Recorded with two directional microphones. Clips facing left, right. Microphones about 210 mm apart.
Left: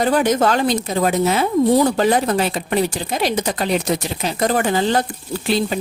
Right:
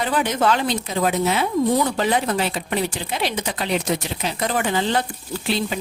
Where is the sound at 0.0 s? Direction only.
40° left (ahead or behind).